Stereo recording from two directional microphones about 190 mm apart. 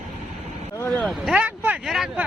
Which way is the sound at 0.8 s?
5° left (ahead or behind).